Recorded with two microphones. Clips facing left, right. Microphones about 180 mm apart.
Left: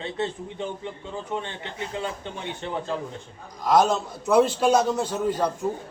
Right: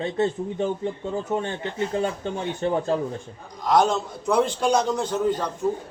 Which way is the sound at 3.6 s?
5° left (ahead or behind).